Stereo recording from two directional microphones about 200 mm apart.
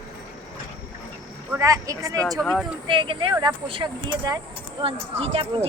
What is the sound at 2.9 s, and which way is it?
Speech, 25° right (ahead or behind).